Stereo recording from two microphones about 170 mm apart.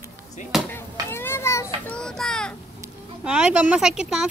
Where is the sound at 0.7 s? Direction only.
15° left (ahead or behind).